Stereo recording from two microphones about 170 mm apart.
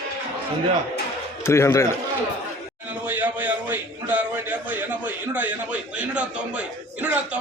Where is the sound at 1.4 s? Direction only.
15° left (ahead or behind).